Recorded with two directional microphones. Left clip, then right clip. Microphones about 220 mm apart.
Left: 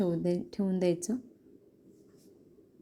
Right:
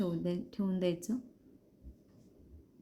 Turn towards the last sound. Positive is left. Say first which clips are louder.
# left 5 dB
turn(degrees=20)  # may be behind; listen again after turning